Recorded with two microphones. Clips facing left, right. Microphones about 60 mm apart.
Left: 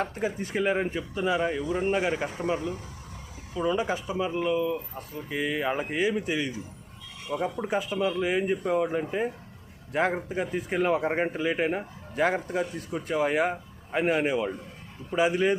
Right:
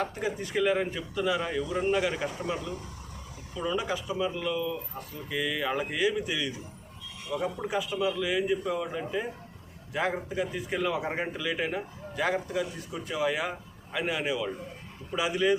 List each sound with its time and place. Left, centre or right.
0.0 s speech: left
1.9 s a man's voice: left